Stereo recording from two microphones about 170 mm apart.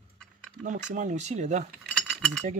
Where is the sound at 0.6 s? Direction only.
45° right (ahead or behind).